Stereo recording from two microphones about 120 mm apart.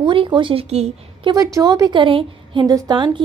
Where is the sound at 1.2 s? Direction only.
35° right (ahead or behind).